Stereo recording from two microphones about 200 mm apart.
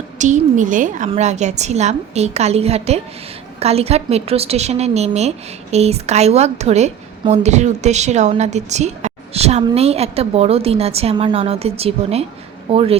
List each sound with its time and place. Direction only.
0.2 s a woman's voice: 40° right (ahead or behind)